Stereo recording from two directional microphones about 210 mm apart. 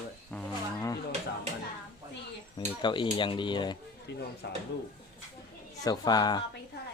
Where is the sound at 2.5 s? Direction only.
20° left (ahead or behind).